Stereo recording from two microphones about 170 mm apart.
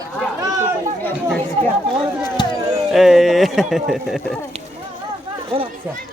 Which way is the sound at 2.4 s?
25° left (ahead or behind).